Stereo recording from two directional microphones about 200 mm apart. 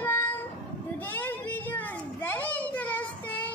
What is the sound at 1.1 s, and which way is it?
Children playing, 10° left (ahead or behind).